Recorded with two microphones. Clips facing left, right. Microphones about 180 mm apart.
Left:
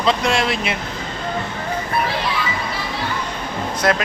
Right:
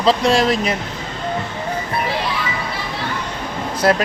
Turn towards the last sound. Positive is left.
turn(degrees=-30)  # may be behind; listen again after turning